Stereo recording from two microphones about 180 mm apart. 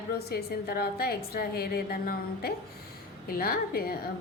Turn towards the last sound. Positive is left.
turn(degrees=55)  # may be behind; listen again after turning